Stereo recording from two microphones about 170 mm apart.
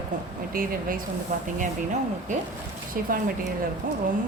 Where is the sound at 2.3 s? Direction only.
45° right (ahead or behind).